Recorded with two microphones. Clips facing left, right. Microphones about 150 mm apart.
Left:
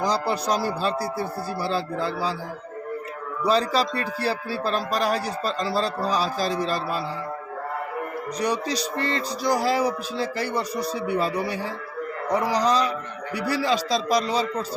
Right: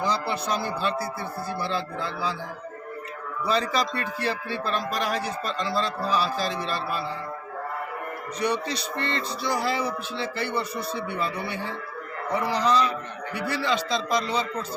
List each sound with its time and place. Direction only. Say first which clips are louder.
0.0 s livestock: left 3 dB; 40° left (ahead or behind)
3.4 s livestock: left 4 dB; 35° left (ahead or behind)
8.4 s livestock: left 1 dB; 35° left (ahead or behind)